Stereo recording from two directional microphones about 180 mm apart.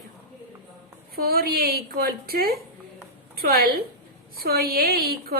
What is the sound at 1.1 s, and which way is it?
A woman's voice, 55° right (ahead or behind).